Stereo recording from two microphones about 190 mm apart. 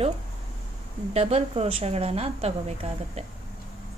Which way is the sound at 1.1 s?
30° right (ahead or behind).